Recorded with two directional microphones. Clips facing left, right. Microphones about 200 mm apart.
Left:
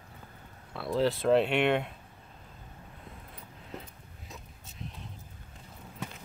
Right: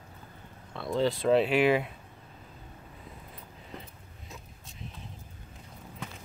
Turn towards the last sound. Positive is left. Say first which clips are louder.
# left 1 dB
turn(degrees=0)  # may be behind; listen again after turning